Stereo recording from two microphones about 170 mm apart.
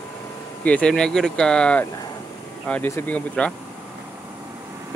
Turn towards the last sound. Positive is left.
turn(degrees=10)  # may be behind; listen again after turning